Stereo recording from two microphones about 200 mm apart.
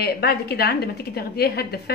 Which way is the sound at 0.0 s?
50° left (ahead or behind).